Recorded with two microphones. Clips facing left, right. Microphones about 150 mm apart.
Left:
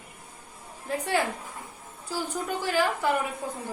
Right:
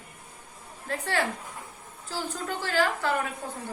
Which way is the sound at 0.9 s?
15° left (ahead or behind).